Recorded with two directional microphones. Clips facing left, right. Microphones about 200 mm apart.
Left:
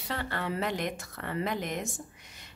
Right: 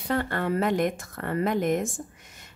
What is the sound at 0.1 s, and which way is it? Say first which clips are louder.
A woman's voice: right 7 dB; 50° right (ahead or behind).